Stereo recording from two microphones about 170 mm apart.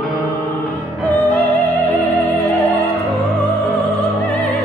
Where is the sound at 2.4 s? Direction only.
35° left (ahead or behind).